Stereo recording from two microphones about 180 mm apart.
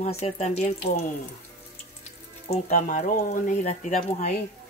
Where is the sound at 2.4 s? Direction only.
40° left (ahead or behind).